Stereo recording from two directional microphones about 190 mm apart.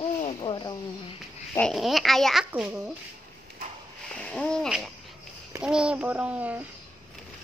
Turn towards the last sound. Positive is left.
turn(degrees=-10)  # may be behind; listen again after turning